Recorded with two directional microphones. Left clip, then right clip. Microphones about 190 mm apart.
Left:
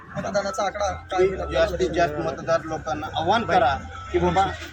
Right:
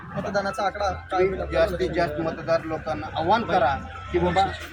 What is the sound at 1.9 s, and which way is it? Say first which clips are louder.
A man's voice: left 2 dB; 5° right (ahead or behind).